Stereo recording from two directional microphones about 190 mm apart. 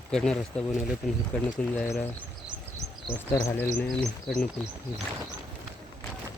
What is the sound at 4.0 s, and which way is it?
Speech, 5° left (ahead or behind).